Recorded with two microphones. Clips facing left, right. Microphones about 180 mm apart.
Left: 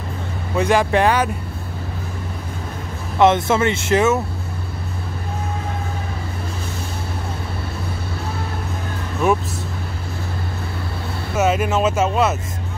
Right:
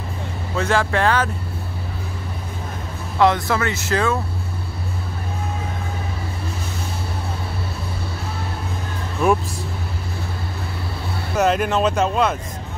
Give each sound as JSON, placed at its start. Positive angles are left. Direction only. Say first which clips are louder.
{"t": 0.6, "sound": "speech", "louder": "left 3 dB", "side_deg": 15}
{"t": 3.2, "sound": "speech", "louder": "left 3 dB", "side_deg": 20}
{"t": 9.2, "sound": "speech", "louder": "even", "side_deg": 0}
{"t": 11.3, "sound": "speech", "louder": "even", "side_deg": 5}